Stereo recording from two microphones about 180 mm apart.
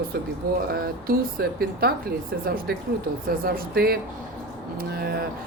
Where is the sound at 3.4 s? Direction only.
55° right (ahead or behind).